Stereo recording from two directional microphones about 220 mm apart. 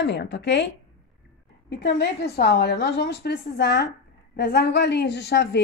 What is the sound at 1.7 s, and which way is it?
A woman's voice, 50° left (ahead or behind).